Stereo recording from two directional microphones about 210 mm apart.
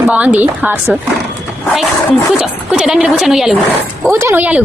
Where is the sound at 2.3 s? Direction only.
5° right (ahead or behind).